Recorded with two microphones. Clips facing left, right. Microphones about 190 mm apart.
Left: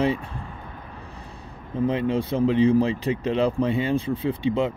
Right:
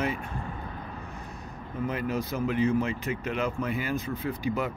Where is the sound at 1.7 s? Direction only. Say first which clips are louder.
Left 7 dB; 30° left (ahead or behind).